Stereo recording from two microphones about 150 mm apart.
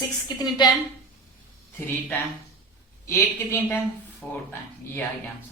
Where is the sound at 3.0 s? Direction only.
15° left (ahead or behind).